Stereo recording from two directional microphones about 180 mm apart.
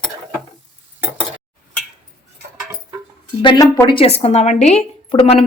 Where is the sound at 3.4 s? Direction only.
25° left (ahead or behind).